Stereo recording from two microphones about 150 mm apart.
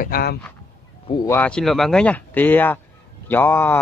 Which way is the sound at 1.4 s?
5° left (ahead or behind).